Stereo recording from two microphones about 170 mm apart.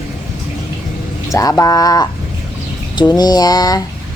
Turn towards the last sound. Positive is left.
turn(degrees=20)  # may be behind; listen again after turning